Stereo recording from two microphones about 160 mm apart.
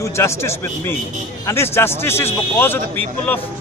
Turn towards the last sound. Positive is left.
turn(degrees=10)  # may be behind; listen again after turning